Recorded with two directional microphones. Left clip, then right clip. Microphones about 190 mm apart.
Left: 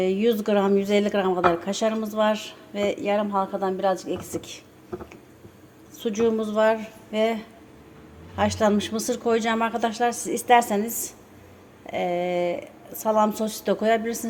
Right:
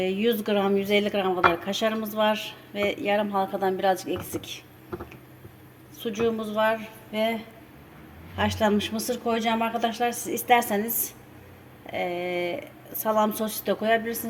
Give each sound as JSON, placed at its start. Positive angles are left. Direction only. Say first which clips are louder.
{"t": 0.0, "sound": "speech", "louder": "left 3 dB", "side_deg": 15}
{"t": 6.0, "sound": "a woman's voice", "louder": "left 3 dB", "side_deg": 20}